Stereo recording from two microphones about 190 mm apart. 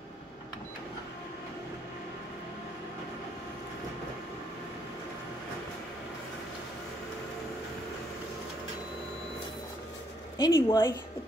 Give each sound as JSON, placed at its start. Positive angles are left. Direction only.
{"t": 10.3, "sound": "speech", "side_deg": 20}